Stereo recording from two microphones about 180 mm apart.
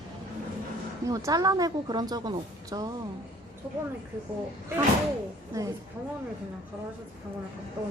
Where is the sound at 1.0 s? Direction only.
20° right (ahead or behind).